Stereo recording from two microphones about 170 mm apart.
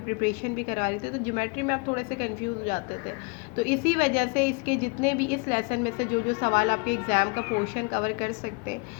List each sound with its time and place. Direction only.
0.2 s a woman's voice: 50° left (ahead or behind)